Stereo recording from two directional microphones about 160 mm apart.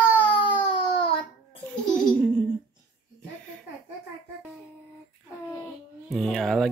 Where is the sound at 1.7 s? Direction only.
5° left (ahead or behind).